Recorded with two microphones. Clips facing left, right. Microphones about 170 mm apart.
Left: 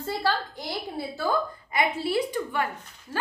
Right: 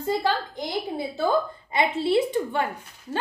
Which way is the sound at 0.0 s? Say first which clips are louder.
Right 3 dB; 15° right (ahead or behind).